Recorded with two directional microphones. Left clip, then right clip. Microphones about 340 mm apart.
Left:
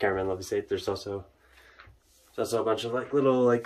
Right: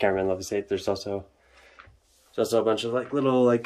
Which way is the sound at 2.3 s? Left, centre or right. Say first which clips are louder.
Right 4 dB; right.